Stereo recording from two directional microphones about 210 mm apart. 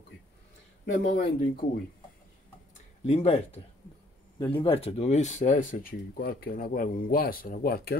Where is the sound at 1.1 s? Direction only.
45° left (ahead or behind).